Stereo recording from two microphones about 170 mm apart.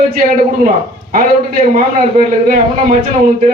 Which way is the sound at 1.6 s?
40° right (ahead or behind).